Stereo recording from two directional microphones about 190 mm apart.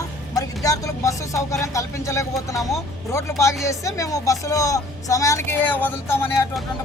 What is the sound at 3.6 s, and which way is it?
Speech, 15° left (ahead or behind).